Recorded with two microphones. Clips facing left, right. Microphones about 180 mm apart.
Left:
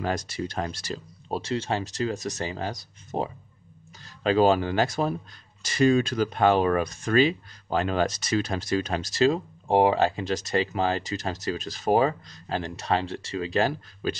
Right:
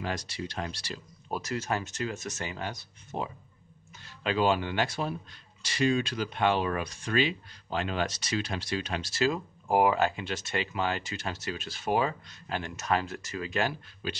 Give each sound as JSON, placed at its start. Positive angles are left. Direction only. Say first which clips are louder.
{"t": 0.0, "sound": "speech", "louder": "left 6 dB", "side_deg": 45}
{"t": 1.3, "sound": "speech", "louder": "left 4 dB", "side_deg": 30}